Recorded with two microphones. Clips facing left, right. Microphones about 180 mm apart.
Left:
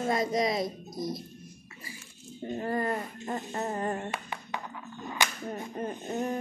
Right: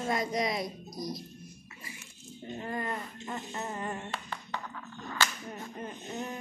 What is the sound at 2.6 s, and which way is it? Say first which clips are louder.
A woman's voice: left 5 dB; 35° left (ahead or behind).